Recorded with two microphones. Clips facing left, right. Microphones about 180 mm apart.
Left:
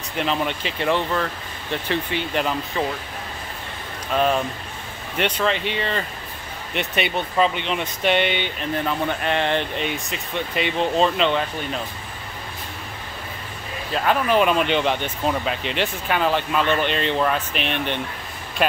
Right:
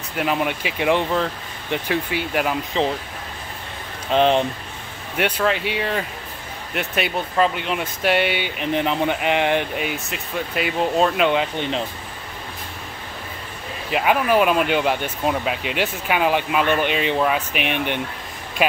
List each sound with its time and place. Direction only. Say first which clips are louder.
0.2 s speech: right 2 dB; 10° right (ahead or behind)
2.8 s speech: right 4 dB; 20° right (ahead or behind)
4.1 s speech: right 4 dB; 25° right (ahead or behind)
5.1 s speech: right 1 dB; 5° right (ahead or behind)
13.9 s speech: right 1 dB; 10° right (ahead or behind)